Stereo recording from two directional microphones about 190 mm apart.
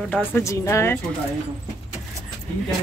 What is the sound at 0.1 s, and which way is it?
Speech, 15° left (ahead or behind).